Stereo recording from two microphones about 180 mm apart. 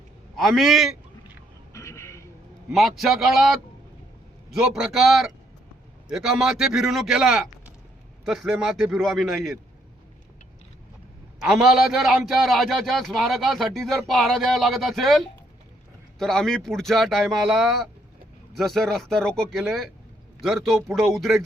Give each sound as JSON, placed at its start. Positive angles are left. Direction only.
{"t": 0.3, "sound": "a man's voice", "side_deg": 0}
{"t": 1.7, "sound": "a sound", "side_deg": 15}
{"t": 2.7, "sound": "a man's voice", "side_deg": 0}
{"t": 11.4, "sound": "a man's voice", "side_deg": -5}